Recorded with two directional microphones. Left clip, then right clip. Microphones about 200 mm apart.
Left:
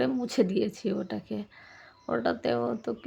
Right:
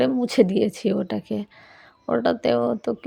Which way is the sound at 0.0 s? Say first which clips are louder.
Right 8 dB; 30° right (ahead or behind).